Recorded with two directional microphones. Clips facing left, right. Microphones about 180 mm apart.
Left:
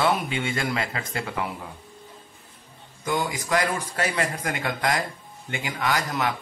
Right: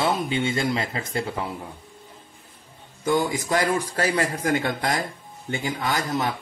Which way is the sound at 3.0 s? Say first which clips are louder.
Right 4 dB; 30° right (ahead or behind).